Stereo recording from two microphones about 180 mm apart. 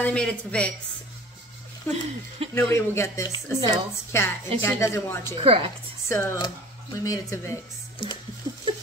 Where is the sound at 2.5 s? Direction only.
15° left (ahead or behind).